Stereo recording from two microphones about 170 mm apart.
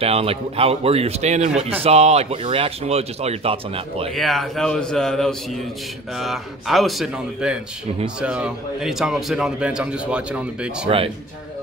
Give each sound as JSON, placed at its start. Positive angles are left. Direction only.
{"t": 0.0, "sound": "speech", "side_deg": -35}
{"t": 1.5, "sound": "a man's voice", "side_deg": -5}
{"t": 1.8, "sound": "speech", "side_deg": -40}
{"t": 4.1, "sound": "a man's voice", "side_deg": 0}